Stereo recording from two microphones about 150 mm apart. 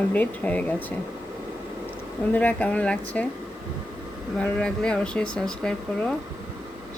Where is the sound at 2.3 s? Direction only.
10° left (ahead or behind).